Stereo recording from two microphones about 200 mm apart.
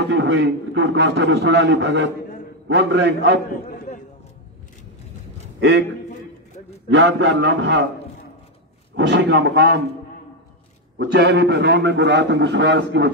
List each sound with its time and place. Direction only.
0.0 s a man's voice: 60° right (ahead or behind)
5.6 s a man's voice: 60° right (ahead or behind)
6.0 s a sound: 35° left (ahead or behind)
6.9 s a man's voice: 60° right (ahead or behind)
8.9 s a man's voice: 60° right (ahead or behind)
11.0 s a man's voice: 55° right (ahead or behind)